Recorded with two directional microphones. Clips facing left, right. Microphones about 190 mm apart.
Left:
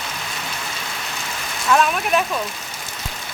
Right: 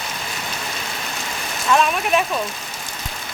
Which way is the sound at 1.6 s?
Centre (ahead or behind).